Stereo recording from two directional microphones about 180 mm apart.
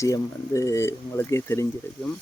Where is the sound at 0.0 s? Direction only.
15° left (ahead or behind).